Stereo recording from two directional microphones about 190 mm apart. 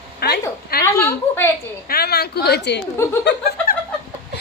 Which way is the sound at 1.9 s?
55° left (ahead or behind).